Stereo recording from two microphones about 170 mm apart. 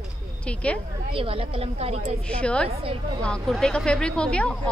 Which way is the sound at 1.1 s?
30° right (ahead or behind).